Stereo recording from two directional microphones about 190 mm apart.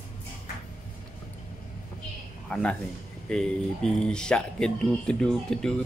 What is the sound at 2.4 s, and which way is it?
A man's voice, 5° left (ahead or behind).